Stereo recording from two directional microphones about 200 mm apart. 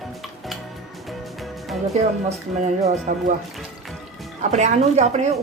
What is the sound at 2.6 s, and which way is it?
Speech, 35° right (ahead or behind).